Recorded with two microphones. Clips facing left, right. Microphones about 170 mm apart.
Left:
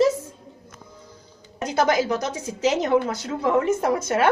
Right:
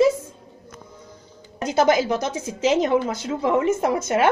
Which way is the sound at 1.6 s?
20° right (ahead or behind).